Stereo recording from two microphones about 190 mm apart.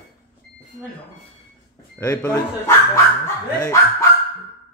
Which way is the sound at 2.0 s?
15° left (ahead or behind).